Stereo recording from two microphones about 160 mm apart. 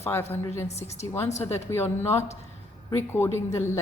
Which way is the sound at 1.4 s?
15° left (ahead or behind).